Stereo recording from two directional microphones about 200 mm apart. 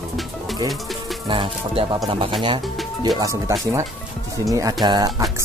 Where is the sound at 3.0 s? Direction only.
15° right (ahead or behind).